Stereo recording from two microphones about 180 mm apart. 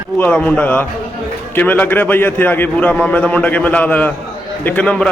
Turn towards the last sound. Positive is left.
turn(degrees=5)  # may be behind; listen again after turning